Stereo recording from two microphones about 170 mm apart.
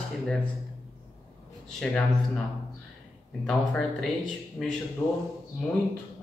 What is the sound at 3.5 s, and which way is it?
Speech, 5° left (ahead or behind).